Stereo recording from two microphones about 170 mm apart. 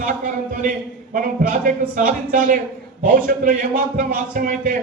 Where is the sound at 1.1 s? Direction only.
50° right (ahead or behind).